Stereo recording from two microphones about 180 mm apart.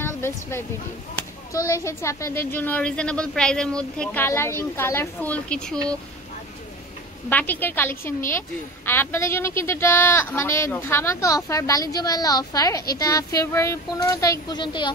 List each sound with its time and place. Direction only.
0.0 s a sound: 15° left (ahead or behind)
1.5 s a woman's voice: 15° left (ahead or behind)
7.2 s a woman's voice: 10° left (ahead or behind); by 14.9 s 25° left (ahead or behind)